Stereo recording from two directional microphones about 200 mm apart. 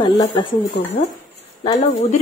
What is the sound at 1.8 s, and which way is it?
Speech, 35° left (ahead or behind).